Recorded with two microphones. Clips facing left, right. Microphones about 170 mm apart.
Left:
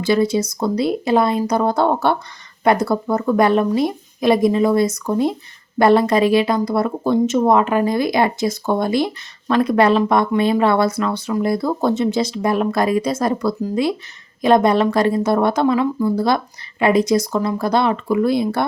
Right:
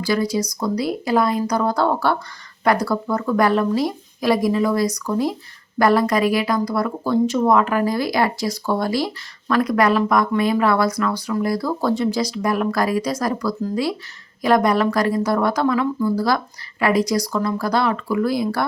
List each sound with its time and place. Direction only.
0.0 s speech: 25° left (ahead or behind)